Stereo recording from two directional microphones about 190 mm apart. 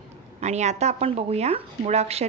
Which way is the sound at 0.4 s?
35° right (ahead or behind).